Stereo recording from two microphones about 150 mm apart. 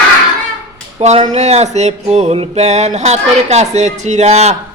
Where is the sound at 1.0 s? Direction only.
50° right (ahead or behind).